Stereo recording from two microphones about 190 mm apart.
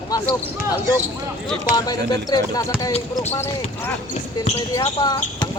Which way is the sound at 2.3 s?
15° left (ahead or behind).